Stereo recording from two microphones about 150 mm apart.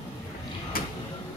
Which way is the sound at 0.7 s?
75° left (ahead or behind).